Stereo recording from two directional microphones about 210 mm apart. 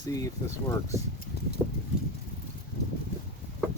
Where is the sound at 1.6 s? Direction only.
5° right (ahead or behind).